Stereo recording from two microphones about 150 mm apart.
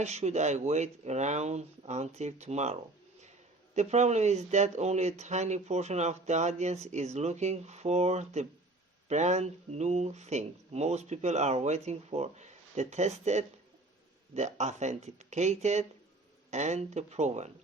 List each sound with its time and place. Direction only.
0.0 s speech: 45° right (ahead or behind)